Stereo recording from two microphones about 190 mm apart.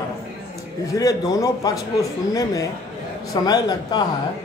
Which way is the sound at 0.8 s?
20° left (ahead or behind).